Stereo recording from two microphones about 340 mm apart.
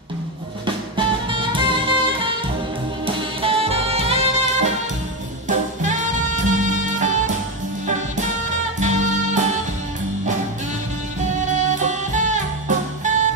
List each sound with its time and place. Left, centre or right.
0.9 s music: centre
8.7 s music: right
11.5 s music: right